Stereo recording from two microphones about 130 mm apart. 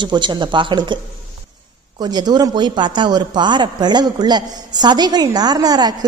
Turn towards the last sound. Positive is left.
turn(degrees=-30)  # may be behind; listen again after turning